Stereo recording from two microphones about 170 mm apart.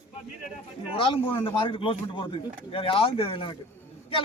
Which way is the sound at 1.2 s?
15° left (ahead or behind).